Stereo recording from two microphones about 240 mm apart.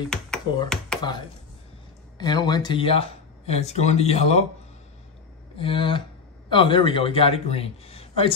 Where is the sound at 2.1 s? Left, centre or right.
Centre.